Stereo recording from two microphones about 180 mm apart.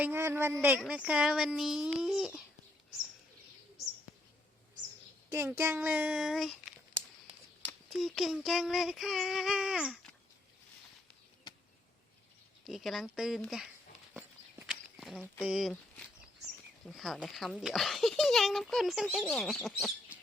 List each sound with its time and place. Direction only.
0.0 s speech: 15° right (ahead or behind)
5.3 s speech: 15° right (ahead or behind)
7.7 s speech: centre (ahead or behind)
12.6 s speech: centre (ahead or behind)
14.7 s a sound: centre (ahead or behind)
15.4 s speech: centre (ahead or behind)
16.9 s speech: centre (ahead or behind)